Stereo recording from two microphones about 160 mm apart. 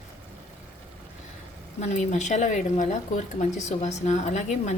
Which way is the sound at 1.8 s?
45° left (ahead or behind).